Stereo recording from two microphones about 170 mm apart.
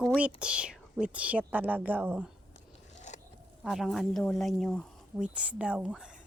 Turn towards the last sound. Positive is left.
turn(degrees=-5)  # may be behind; listen again after turning